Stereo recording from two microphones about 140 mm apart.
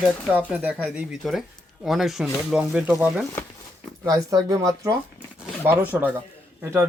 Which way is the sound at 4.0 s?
25° right (ahead or behind).